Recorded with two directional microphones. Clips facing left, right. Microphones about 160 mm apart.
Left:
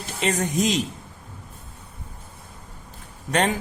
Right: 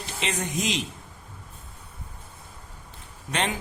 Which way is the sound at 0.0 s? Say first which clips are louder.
Left 6 dB; 45° left (ahead or behind).